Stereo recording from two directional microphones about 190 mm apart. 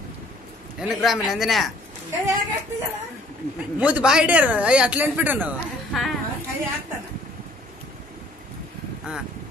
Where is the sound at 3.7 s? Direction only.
5° right (ahead or behind).